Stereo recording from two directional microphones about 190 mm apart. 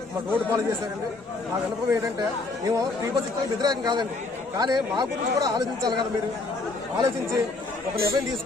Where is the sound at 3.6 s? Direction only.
20° right (ahead or behind).